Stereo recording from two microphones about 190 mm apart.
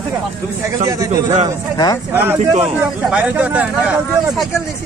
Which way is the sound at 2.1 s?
10° right (ahead or behind).